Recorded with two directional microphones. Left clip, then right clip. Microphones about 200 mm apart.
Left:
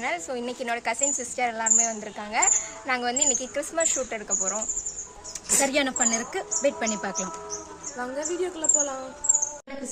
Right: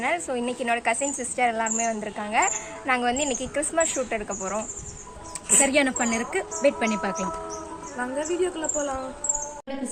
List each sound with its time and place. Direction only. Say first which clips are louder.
0.0 s speech: right 3 dB; 5° right (ahead or behind)
5.5 s a woman's voice: right 3 dB; 10° left (ahead or behind)
7.9 s speech: right 3 dB; 25° left (ahead or behind)